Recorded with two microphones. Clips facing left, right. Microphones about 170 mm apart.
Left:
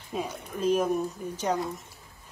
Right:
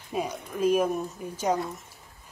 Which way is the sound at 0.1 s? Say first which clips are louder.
Right 2 dB; 10° right (ahead or behind).